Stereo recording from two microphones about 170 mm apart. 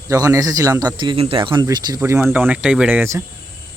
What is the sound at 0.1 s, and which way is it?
A man's voice, 20° right (ahead or behind).